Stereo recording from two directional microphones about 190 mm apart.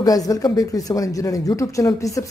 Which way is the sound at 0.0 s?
20° left (ahead or behind).